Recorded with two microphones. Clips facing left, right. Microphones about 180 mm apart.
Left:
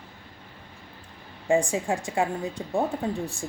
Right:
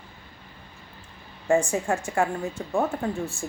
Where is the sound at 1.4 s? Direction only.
15° left (ahead or behind).